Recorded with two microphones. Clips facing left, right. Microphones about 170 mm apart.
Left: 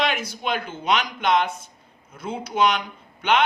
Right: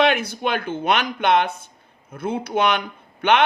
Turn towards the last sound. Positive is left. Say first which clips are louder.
# right 3 dB
turn(degrees=-55)  # may be behind; listen again after turning